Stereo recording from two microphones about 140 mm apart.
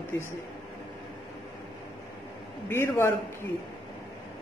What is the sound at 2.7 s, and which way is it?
Speech, 15° left (ahead or behind).